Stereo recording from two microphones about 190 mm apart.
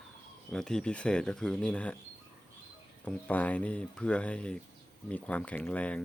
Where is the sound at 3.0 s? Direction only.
5° left (ahead or behind).